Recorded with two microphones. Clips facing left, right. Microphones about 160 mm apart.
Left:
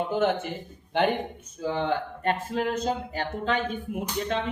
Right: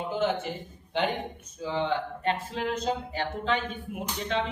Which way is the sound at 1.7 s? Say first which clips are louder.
Even; 50° left (ahead or behind).